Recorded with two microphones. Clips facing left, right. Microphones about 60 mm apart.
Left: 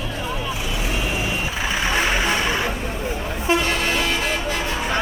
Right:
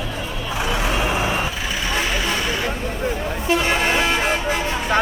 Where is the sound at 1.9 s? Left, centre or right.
Centre.